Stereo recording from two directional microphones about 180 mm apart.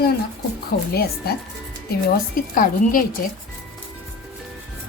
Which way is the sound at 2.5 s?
50° left (ahead or behind).